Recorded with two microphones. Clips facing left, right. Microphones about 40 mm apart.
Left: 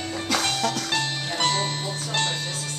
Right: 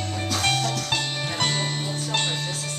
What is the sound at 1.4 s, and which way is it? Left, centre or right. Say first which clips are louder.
Music: left 2 dB; centre.